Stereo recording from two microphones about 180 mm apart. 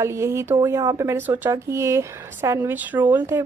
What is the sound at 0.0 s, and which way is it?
A woman's voice, 15° right (ahead or behind).